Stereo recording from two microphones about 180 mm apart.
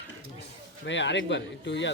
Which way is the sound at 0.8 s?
80° left.